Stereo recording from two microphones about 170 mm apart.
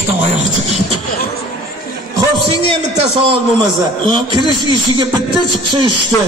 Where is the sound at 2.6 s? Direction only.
35° right (ahead or behind).